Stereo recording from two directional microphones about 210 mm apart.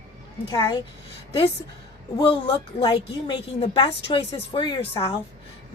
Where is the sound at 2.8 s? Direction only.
20° left (ahead or behind).